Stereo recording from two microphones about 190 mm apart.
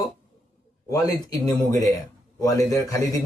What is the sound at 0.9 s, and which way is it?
Speech, 20° left (ahead or behind).